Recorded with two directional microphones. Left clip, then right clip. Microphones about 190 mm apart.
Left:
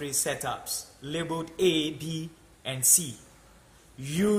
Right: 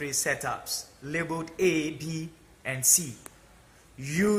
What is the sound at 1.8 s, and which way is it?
Speech, 15° left (ahead or behind).